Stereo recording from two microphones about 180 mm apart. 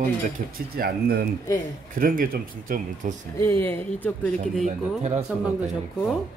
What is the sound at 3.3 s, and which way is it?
Speech, 10° left (ahead or behind).